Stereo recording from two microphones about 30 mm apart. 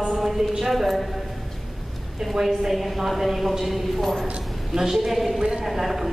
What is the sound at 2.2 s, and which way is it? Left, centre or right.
A woman's voice, centre.